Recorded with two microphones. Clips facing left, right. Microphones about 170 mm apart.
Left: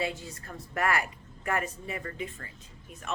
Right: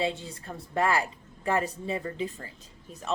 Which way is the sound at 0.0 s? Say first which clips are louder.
Right 3 dB; 30° right (ahead or behind).